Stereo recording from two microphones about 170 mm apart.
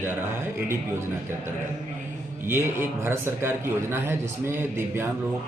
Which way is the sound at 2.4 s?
15° right (ahead or behind).